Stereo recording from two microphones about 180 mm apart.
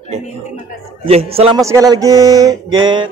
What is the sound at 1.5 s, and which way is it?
Speech, 20° right (ahead or behind).